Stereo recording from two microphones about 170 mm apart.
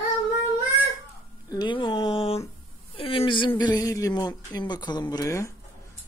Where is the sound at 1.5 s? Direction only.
25° left (ahead or behind).